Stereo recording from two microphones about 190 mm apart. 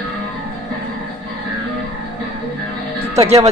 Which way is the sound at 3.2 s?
30° right (ahead or behind).